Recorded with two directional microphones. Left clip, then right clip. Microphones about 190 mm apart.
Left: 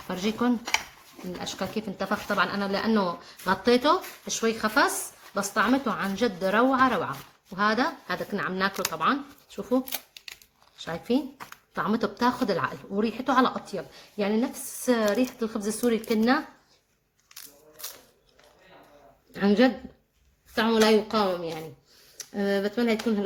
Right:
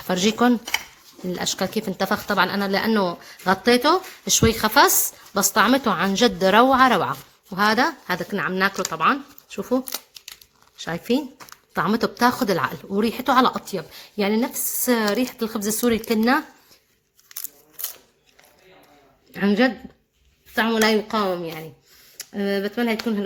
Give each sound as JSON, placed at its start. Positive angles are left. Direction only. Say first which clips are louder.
{"t": 0.1, "sound": "a woman's voice", "louder": "right 8 dB", "side_deg": -50}
{"t": 19.3, "sound": "speech", "louder": "right 2 dB", "side_deg": -30}